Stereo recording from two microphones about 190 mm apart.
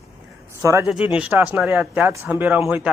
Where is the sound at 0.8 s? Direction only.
5° right (ahead or behind).